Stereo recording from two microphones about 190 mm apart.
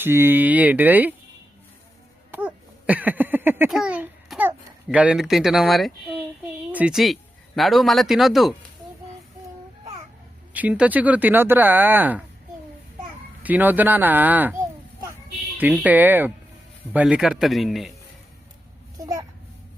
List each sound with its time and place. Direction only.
0.0 s speech: 10° right (ahead or behind)
2.3 s speech: 10° right (ahead or behind)
10.5 s speech: 5° right (ahead or behind)
13.4 s speech: 10° right (ahead or behind)
15.5 s a man's voice: 10° right (ahead or behind)
18.9 s babbling: 15° right (ahead or behind)